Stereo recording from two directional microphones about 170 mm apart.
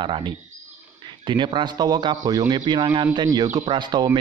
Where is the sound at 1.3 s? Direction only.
30° right (ahead or behind).